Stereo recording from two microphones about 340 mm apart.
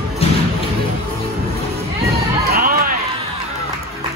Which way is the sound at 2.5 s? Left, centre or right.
Right.